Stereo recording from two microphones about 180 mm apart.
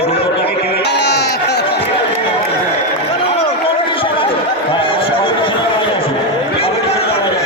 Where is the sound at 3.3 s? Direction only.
30° left (ahead or behind).